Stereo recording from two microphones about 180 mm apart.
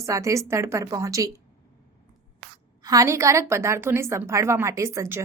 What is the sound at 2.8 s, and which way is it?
A woman's voice, 20° right (ahead or behind).